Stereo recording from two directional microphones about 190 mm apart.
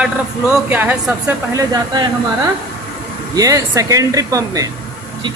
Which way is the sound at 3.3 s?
20° right (ahead or behind).